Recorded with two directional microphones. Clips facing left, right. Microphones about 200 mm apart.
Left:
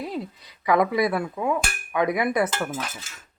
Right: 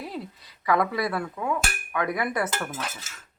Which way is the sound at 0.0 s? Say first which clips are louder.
Left 4 dB; 15° left (ahead or behind).